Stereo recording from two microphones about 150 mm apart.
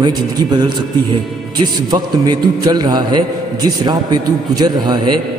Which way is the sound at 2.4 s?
30° right (ahead or behind).